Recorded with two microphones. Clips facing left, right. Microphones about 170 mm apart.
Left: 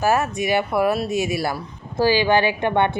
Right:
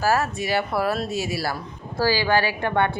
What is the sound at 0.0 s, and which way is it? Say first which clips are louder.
Speech: left 2 dB; 20° left (ahead or behind).